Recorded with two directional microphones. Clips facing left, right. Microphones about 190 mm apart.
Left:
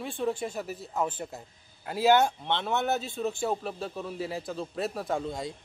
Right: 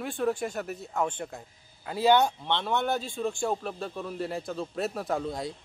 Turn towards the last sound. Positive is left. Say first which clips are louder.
# right 1 dB
turn(degrees=0)  # may be behind; listen again after turning